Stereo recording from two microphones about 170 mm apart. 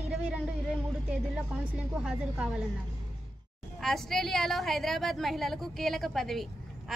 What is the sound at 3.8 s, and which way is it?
A woman's voice, centre (ahead or behind).